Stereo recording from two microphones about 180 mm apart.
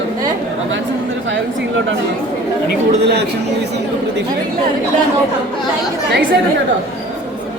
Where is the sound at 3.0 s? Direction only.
65° right (ahead or behind).